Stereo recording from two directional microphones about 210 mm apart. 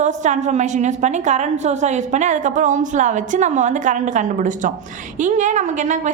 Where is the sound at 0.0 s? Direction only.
35° right (ahead or behind).